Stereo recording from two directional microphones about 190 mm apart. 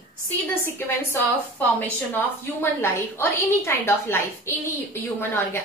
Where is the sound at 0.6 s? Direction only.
10° left (ahead or behind).